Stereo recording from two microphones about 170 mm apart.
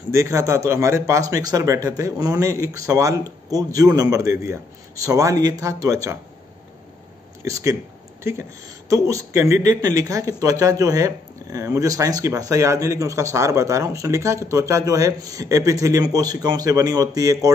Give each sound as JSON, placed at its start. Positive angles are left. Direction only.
{"t": 0.1, "sound": "speech", "side_deg": -15}
{"t": 7.4, "sound": "speech", "side_deg": -20}
{"t": 8.8, "sound": "speech", "side_deg": -20}